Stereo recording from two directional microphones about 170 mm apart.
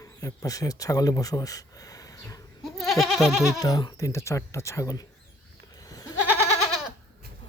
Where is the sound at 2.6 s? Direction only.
Centre (ahead or behind).